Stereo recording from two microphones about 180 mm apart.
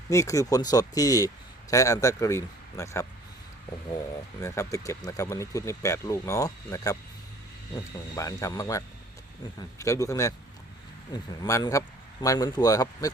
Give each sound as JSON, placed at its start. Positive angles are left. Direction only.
{"t": 0.1, "sound": "speech", "side_deg": 15}
{"t": 4.4, "sound": "speech", "side_deg": 15}
{"t": 8.1, "sound": "speech", "side_deg": 20}